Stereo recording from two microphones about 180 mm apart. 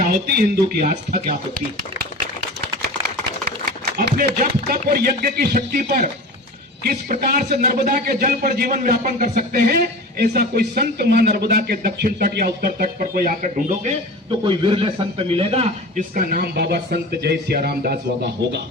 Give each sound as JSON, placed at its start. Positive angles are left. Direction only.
{"t": 0.0, "sound": "a man's voice", "side_deg": -55}
{"t": 3.7, "sound": "a man's voice", "side_deg": -50}
{"t": 14.4, "sound": "a man's voice", "side_deg": -30}
{"t": 16.1, "sound": "a man's voice", "side_deg": -50}